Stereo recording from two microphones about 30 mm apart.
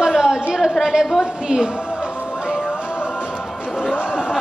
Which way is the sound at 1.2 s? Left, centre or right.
Right.